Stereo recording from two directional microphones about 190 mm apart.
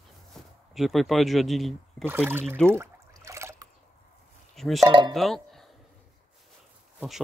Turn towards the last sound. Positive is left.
turn(degrees=0)  # may be behind; listen again after turning